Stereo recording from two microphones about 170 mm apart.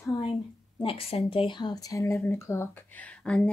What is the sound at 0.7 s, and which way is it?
Speech, 35° left (ahead or behind).